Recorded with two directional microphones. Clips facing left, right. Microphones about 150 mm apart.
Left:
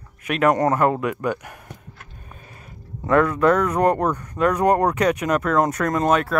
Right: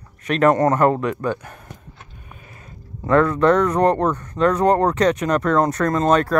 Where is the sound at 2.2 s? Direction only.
35° left (ahead or behind).